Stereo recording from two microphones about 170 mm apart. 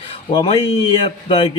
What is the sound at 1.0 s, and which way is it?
Speech, 35° left (ahead or behind).